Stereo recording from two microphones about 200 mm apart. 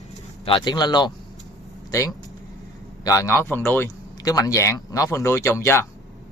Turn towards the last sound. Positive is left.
turn(degrees=10)  # may be behind; listen again after turning